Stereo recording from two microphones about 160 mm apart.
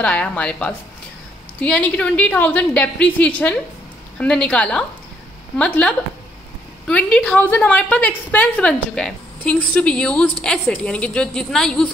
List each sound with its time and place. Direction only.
0.0 s a woman's voice: 5° left (ahead or behind)